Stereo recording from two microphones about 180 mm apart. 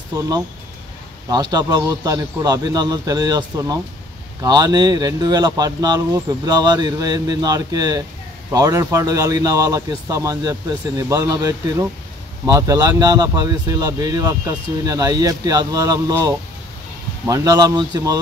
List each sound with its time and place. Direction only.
1.3 s speech: 20° right (ahead or behind)